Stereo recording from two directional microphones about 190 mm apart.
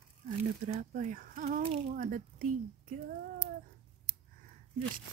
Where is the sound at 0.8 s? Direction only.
40° right (ahead or behind).